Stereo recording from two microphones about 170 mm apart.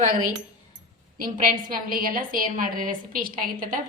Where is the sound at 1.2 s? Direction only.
55° right (ahead or behind).